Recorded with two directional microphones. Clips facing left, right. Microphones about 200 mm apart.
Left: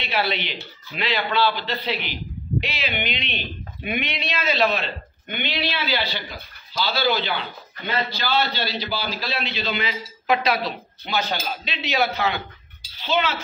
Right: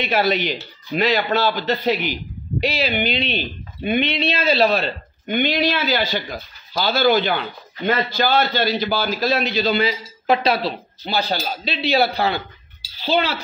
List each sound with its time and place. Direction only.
0.0 s a man's voice: 45° right (ahead or behind)